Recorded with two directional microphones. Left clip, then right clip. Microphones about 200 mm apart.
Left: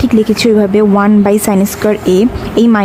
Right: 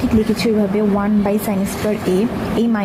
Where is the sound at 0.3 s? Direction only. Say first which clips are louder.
Left 8 dB; 30° left (ahead or behind).